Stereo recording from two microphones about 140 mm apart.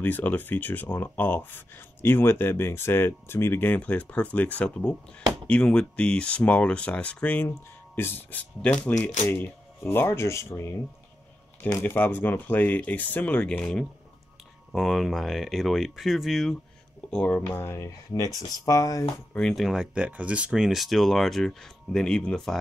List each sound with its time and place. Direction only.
0.0 s speech: 15° left (ahead or behind)
19.3 s speech: centre (ahead or behind)